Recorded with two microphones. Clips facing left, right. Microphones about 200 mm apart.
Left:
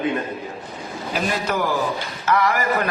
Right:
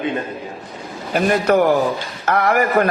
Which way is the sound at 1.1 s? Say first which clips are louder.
Right 8 dB; 55° right (ahead or behind).